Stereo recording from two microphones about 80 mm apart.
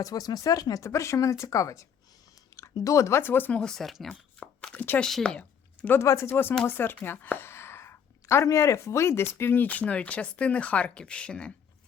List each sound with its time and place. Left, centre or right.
0.0 s speech: left
3.6 s speech: centre
4.1 s a sound: centre
4.9 s speech: centre
5.9 s speech: left; by 11.5 s centre